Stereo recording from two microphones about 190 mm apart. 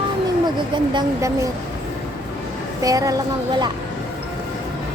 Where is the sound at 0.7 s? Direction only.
25° right (ahead or behind).